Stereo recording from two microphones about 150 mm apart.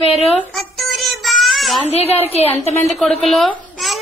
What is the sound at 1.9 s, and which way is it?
Speech, 40° left (ahead or behind).